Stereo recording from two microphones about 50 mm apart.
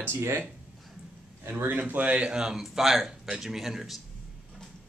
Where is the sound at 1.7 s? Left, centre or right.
Right.